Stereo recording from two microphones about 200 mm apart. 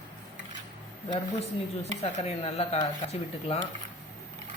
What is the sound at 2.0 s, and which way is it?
Speech, 30° left (ahead or behind).